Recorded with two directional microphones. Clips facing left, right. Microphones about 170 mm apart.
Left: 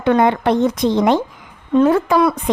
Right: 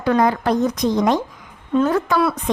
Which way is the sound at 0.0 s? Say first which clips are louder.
Left 3 dB; 25° left (ahead or behind).